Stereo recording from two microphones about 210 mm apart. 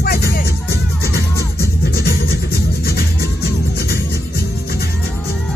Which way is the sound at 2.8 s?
50° left (ahead or behind).